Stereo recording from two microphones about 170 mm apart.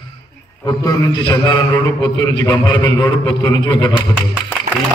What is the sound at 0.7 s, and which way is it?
A man's voice, 20° left (ahead or behind).